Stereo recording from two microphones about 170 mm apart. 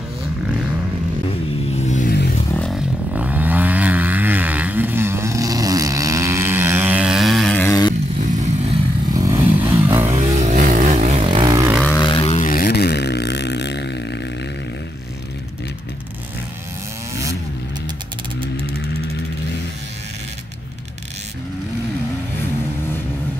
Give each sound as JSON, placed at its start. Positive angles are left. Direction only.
{"t": 1.8, "sound": "vehicle", "side_deg": 45}
{"t": 2.5, "sound": "a sound", "side_deg": 5}
{"t": 3.1, "sound": "vehicle", "side_deg": -10}
{"t": 7.6, "sound": "vehicle", "side_deg": 20}
{"t": 8.2, "sound": "vehicle", "side_deg": -45}
{"t": 9.1, "sound": "vehicle", "side_deg": -20}
{"t": 10.0, "sound": "vehicle", "side_deg": -40}
{"t": 11.2, "sound": "vehicle", "side_deg": -25}
{"t": 11.9, "sound": "vehicle", "side_deg": 25}
{"t": 12.4, "sound": "a sound", "side_deg": 55}
{"t": 18.4, "sound": "a sound", "side_deg": -35}